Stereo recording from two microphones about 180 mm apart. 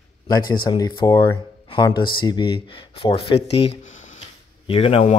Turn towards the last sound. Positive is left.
turn(degrees=35)  # may be behind; listen again after turning